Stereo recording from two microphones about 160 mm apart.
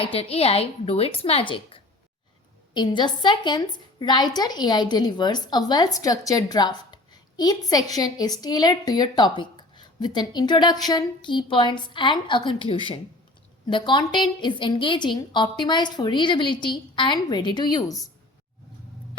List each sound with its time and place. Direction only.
0.0 s a woman's voice: 40° left (ahead or behind); by 18.1 s 20° left (ahead or behind)